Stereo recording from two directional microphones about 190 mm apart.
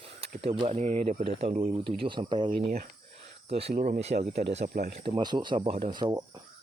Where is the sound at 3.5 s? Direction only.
30° right (ahead or behind).